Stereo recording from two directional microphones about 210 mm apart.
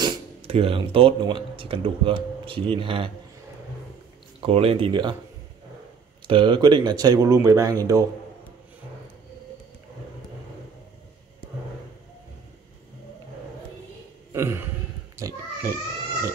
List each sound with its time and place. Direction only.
0.0 s speech: 25° right (ahead or behind)
4.4 s speech: 25° right (ahead or behind)
6.2 s a man's voice: 25° right (ahead or behind)
14.3 s a sound: 10° right (ahead or behind)
15.1 s pig: 15° right (ahead or behind)